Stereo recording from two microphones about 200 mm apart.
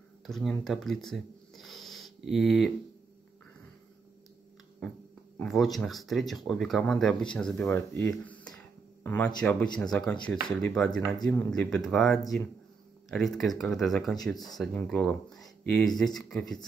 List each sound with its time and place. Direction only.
0.3 s speech: centre (ahead or behind)
5.4 s speech: centre (ahead or behind)
14.3 s speech: 20° left (ahead or behind)
14.6 s speech: 5° left (ahead or behind)